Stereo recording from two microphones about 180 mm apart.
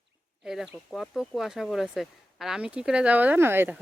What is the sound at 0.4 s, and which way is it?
Speech, centre (ahead or behind).